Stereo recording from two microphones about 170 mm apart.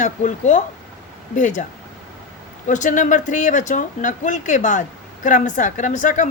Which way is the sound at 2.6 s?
45° left (ahead or behind).